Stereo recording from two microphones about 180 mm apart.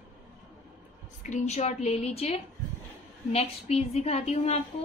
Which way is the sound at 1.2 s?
40° left (ahead or behind).